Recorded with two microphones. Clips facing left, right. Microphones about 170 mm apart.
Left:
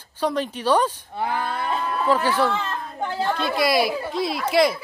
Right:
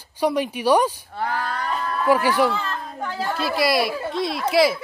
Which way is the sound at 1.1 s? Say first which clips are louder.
Left 1 dB; 15° left (ahead or behind).